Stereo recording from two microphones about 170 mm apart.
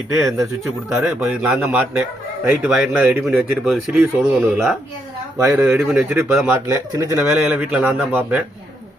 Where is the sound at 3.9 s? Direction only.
15° right (ahead or behind).